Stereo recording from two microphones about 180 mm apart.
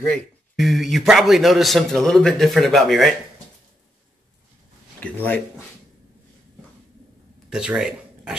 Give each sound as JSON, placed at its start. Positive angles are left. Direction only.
{"t": 0.0, "sound": "a man's voice", "side_deg": 5}
{"t": 5.0, "sound": "speech", "side_deg": 10}
{"t": 7.4, "sound": "speech", "side_deg": -5}